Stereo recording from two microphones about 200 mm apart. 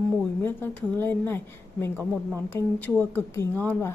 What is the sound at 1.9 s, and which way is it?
Speech, 10° right (ahead or behind).